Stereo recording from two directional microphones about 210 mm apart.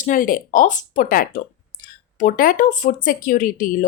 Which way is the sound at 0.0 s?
40° left (ahead or behind).